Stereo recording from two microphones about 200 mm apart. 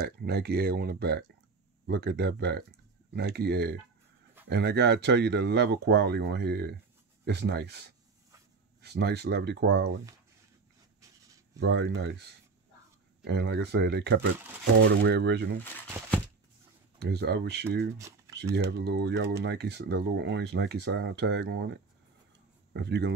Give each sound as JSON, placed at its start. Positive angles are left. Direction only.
{"t": 0.0, "sound": "speech", "side_deg": -55}
{"t": 8.8, "sound": "speech", "side_deg": -55}
{"t": 11.0, "sound": "writing", "side_deg": -15}
{"t": 11.6, "sound": "speech", "side_deg": -60}
{"t": 13.2, "sound": "speech", "side_deg": -55}
{"t": 17.0, "sound": "speech", "side_deg": -55}
{"t": 17.9, "sound": "speech", "side_deg": -15}
{"t": 18.5, "sound": "speech", "side_deg": -60}